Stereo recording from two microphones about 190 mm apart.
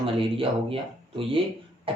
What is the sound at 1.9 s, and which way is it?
Cough, 30° right (ahead or behind).